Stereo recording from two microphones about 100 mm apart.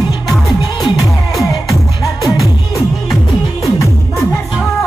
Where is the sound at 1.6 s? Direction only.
35° left (ahead or behind).